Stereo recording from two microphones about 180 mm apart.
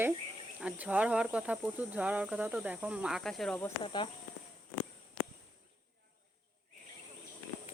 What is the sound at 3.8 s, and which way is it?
Speech, 25° left (ahead or behind).